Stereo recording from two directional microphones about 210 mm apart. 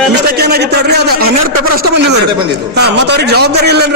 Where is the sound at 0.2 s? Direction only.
50° right (ahead or behind).